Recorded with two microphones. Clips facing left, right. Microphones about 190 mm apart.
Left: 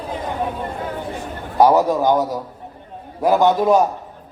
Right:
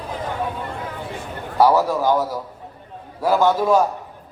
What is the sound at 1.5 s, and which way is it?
A man's voice, 20° left (ahead or behind).